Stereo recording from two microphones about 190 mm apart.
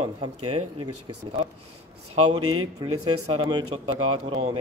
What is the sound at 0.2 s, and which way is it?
Speech, 25° right (ahead or behind).